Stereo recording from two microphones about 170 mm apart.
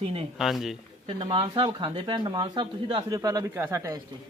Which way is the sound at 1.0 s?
30° right (ahead or behind).